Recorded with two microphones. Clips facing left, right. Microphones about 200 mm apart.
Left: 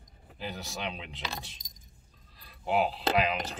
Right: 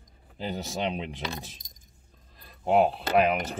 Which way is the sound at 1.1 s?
55° right (ahead or behind).